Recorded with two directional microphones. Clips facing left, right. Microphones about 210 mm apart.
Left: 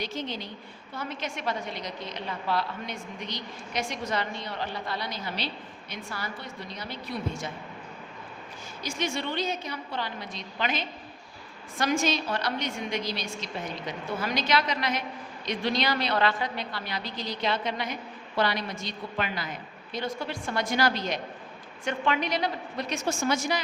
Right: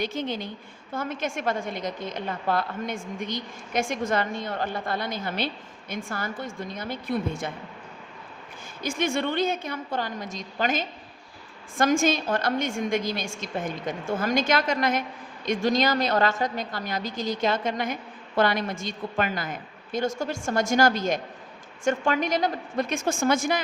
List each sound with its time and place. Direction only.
0.0 s a woman's voice: 55° right (ahead or behind)
8.8 s a woman's voice: 55° right (ahead or behind)